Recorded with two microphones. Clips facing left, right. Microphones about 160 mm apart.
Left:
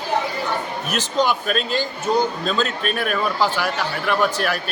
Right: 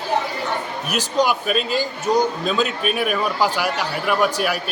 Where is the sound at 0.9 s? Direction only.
10° right (ahead or behind).